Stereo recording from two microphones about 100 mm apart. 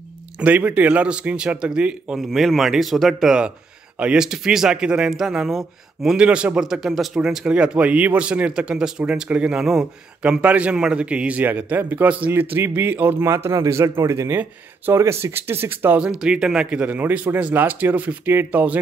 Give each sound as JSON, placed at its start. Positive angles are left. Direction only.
{"t": 0.4, "sound": "a man's voice", "side_deg": -15}
{"t": 16.0, "sound": "a man's voice", "side_deg": -10}